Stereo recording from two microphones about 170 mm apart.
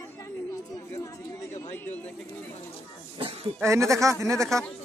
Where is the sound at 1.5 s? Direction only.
10° left (ahead or behind).